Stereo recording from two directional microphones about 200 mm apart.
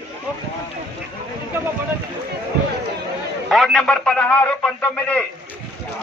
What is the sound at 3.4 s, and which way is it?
A man's voice, centre (ahead or behind).